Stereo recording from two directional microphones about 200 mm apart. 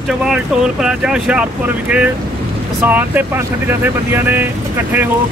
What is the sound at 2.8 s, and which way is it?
Speech, 10° right (ahead or behind).